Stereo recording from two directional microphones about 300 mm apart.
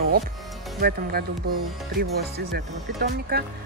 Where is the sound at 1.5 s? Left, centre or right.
Right.